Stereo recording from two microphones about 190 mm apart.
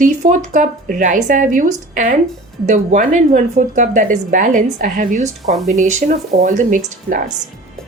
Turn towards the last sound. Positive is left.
turn(degrees=-45)  # may be behind; listen again after turning